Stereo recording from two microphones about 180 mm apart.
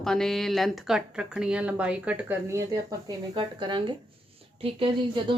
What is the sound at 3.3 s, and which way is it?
A woman's voice, 25° right (ahead or behind).